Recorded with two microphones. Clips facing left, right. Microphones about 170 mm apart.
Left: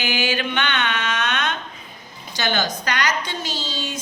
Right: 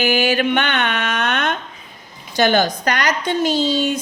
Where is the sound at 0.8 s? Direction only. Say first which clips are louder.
Right 3 dB; 60° right (ahead or behind).